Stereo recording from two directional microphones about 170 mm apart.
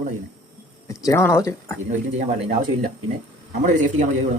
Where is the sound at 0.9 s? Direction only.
20° left (ahead or behind).